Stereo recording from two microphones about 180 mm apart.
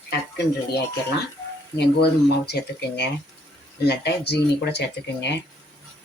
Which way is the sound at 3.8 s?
65° left (ahead or behind).